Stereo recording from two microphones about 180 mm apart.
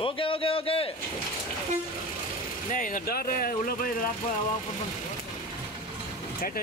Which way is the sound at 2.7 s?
50° left (ahead or behind).